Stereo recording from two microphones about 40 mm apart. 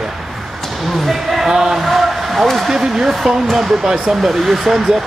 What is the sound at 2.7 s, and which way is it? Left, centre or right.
Speech, centre.